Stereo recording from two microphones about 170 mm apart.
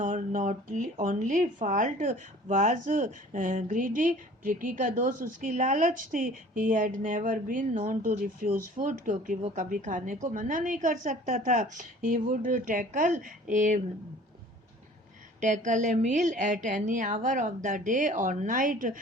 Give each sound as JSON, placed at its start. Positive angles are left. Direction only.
{"t": 0.0, "sound": "speech", "side_deg": -50}
{"t": 15.4, "sound": "speech", "side_deg": -45}